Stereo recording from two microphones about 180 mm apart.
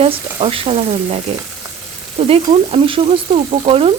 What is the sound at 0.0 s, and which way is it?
A woman's voice, 30° right (ahead or behind).